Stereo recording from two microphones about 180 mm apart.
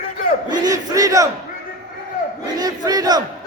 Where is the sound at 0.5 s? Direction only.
20° right (ahead or behind).